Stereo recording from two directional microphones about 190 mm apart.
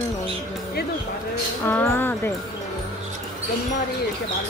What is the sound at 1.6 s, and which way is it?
Speech, 10° left (ahead or behind).